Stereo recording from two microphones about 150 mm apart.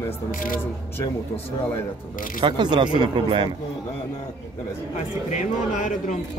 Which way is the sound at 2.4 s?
30° right (ahead or behind).